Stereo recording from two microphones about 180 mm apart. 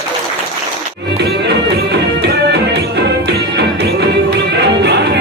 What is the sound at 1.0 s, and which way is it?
Music, 70° right (ahead or behind).